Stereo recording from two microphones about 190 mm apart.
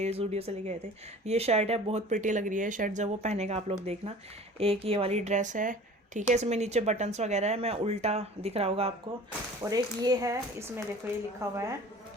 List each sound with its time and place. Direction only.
0.0 s speech: 35° right (ahead or behind)
9.6 s speech: 20° right (ahead or behind)